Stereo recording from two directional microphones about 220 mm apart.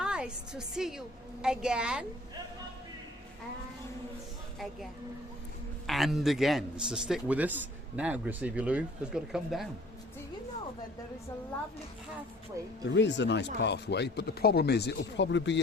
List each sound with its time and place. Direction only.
0.0 s a man's voice: 5° right (ahead or behind)
5.8 s a man's voice: centre (ahead or behind)
12.6 s speech: 15° right (ahead or behind)
12.9 s speech: 55° left (ahead or behind)